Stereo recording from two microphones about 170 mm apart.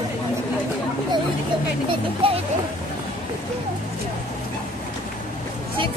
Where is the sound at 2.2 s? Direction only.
35° right (ahead or behind).